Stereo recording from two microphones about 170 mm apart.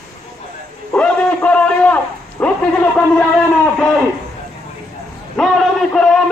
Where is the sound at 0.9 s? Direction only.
5° left (ahead or behind).